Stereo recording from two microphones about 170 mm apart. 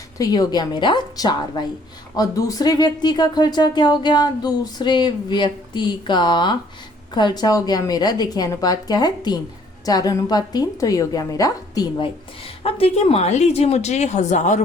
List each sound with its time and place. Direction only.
0.2 s speech: 25° left (ahead or behind)
12.6 s a woman's voice: 35° left (ahead or behind)